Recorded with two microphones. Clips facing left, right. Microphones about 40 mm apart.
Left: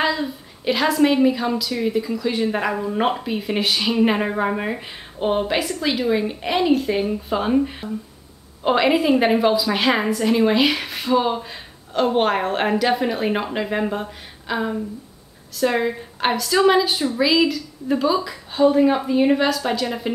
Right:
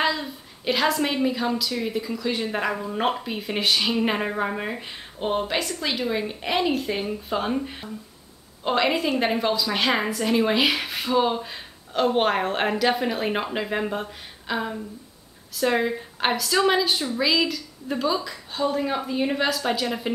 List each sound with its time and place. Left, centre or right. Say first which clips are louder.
0.0 s a woman's voice: left 3 dB; centre